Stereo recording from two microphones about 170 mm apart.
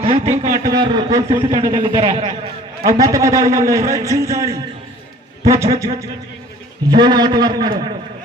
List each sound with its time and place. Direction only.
0.0 s speech: 40° right (ahead or behind)
0.6 s a man's voice: 25° right (ahead or behind)
2.8 s a man's voice: 20° right (ahead or behind)